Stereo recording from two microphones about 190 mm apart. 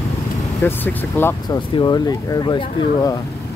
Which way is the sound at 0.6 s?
10° left (ahead or behind).